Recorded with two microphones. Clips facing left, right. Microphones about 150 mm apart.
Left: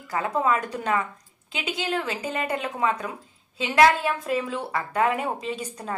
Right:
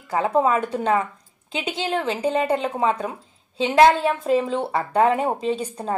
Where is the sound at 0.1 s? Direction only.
30° right (ahead or behind).